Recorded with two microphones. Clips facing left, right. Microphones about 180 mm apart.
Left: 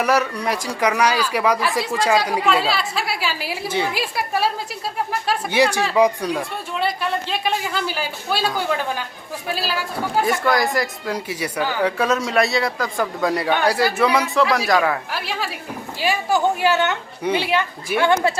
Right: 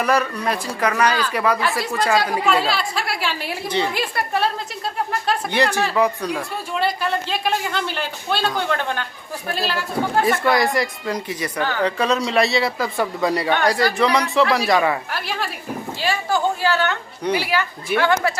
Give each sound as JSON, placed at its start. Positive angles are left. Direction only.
{"t": 0.0, "sound": "speech", "side_deg": 10}
{"t": 2.1, "sound": "a woman's voice", "side_deg": 0}
{"t": 16.0, "sound": "speech", "side_deg": 15}